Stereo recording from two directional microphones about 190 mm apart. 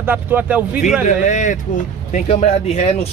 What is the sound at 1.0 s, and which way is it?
Speech, 40° left (ahead or behind).